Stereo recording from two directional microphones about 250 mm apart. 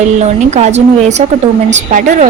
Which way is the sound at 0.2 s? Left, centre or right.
Right.